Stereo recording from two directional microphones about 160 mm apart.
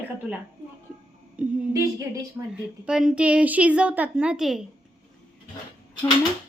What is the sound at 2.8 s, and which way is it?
A woman's voice, 5° right (ahead or behind).